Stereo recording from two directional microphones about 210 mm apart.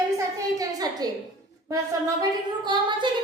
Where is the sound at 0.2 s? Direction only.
15° right (ahead or behind).